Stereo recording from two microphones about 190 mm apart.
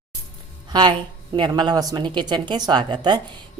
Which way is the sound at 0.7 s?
25° right (ahead or behind).